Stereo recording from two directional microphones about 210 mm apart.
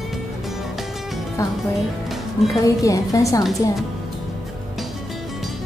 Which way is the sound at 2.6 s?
15° left (ahead or behind).